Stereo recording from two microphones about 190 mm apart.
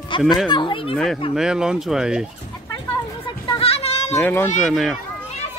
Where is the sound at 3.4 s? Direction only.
25° left (ahead or behind).